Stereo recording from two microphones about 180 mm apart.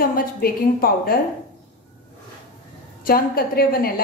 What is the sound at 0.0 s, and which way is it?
A woman's voice, 55° left (ahead or behind).